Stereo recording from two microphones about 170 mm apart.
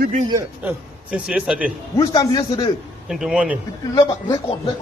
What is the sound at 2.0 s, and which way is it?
Speech, 25° left (ahead or behind).